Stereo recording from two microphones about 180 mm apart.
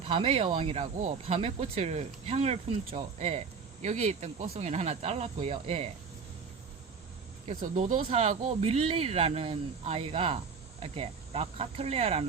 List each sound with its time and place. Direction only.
0.0 s speech: 35° right (ahead or behind)
7.4 s speech: 45° right (ahead or behind)
8.0 s speech: 35° right (ahead or behind)